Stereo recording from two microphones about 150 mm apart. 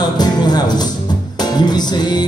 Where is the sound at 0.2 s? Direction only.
25° left (ahead or behind).